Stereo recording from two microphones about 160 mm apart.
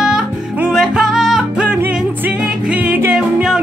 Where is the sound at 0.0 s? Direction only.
5° right (ahead or behind).